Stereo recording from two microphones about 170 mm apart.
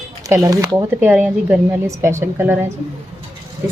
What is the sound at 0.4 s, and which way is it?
Speech, 20° right (ahead or behind).